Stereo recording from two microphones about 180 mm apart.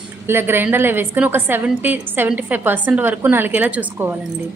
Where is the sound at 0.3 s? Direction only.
10° right (ahead or behind).